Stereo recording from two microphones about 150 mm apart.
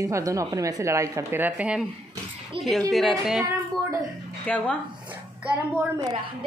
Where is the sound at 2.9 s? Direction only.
Centre (ahead or behind).